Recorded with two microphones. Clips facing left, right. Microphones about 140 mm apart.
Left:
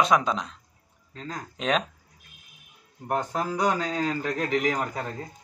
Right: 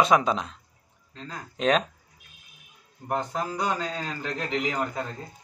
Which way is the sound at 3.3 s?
50° left (ahead or behind).